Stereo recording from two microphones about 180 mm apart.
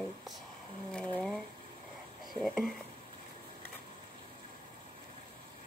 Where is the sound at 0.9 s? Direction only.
5° left (ahead or behind).